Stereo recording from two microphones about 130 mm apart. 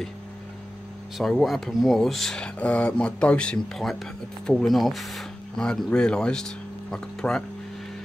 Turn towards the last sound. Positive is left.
turn(degrees=5)  # may be behind; listen again after turning